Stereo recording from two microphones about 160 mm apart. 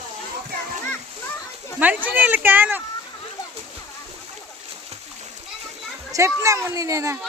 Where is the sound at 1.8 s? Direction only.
10° right (ahead or behind).